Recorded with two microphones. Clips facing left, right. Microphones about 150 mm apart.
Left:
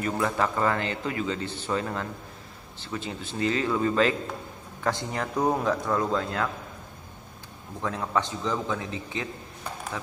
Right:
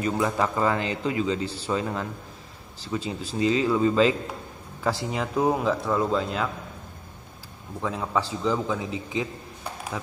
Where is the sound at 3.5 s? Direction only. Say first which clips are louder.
Right 4 dB; 10° right (ahead or behind).